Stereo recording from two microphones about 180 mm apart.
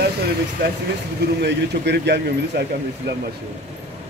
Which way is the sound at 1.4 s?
70° right (ahead or behind).